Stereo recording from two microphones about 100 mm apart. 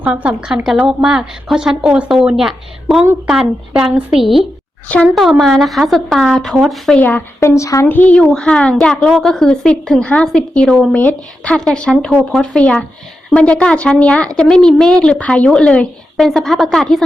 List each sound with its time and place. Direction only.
0.0 s a woman's voice: 15° right (ahead or behind); by 7.0 s centre (ahead or behind)
7.0 s a woman's voice: 20° left (ahead or behind)
7.9 s a woman's voice: 15° left (ahead or behind)